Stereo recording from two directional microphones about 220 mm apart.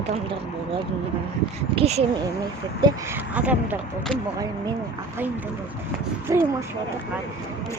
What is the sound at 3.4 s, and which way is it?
Speech, 5° right (ahead or behind).